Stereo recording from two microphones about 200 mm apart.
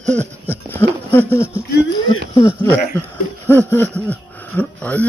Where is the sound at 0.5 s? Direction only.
10° left (ahead or behind).